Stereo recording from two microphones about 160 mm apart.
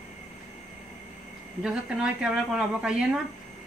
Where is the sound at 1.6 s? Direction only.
5° right (ahead or behind).